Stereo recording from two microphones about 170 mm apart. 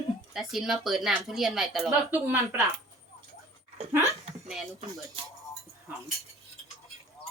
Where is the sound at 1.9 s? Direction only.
10° right (ahead or behind).